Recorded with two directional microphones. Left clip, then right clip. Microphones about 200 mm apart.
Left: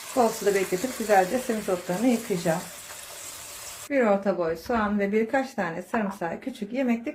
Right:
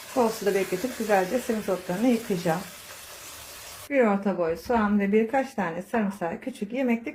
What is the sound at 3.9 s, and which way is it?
A woman's voice, centre (ahead or behind).